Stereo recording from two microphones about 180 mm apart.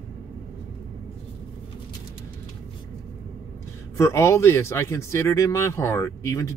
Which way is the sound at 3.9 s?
15° left (ahead or behind).